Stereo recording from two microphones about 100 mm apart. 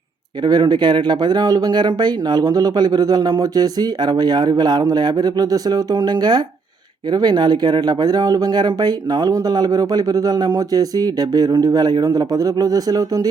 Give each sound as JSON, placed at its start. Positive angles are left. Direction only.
{"t": 0.4, "sound": "speech", "side_deg": -45}